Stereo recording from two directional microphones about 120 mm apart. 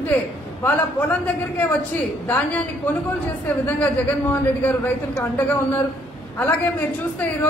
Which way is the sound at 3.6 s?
15° left (ahead or behind).